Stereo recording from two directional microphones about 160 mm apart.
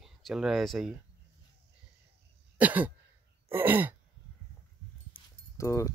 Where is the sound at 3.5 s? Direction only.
10° right (ahead or behind).